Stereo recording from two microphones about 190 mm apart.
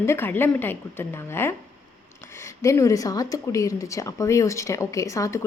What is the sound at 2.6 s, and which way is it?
Speech, 15° left (ahead or behind).